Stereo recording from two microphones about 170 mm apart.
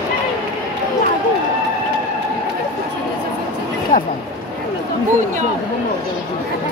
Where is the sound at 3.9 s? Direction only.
55° left (ahead or behind).